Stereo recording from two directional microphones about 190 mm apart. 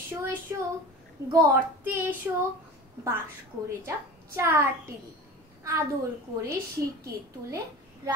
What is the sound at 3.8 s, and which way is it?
Speech, 15° right (ahead or behind).